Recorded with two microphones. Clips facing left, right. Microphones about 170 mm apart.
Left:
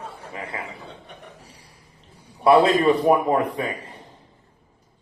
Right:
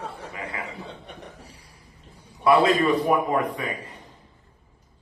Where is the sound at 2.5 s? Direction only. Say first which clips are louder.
Left 3 dB; 30° left (ahead or behind).